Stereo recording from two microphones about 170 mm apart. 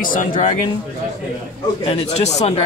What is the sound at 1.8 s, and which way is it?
Speech, 35° left (ahead or behind).